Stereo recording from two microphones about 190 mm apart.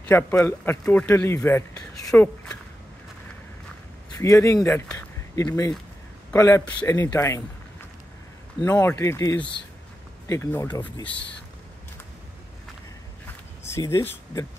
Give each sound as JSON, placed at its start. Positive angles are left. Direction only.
{"t": 0.1, "sound": "speech", "side_deg": 10}
{"t": 4.2, "sound": "speech", "side_deg": 15}
{"t": 8.6, "sound": "speech", "side_deg": 15}
{"t": 13.7, "sound": "speech", "side_deg": 15}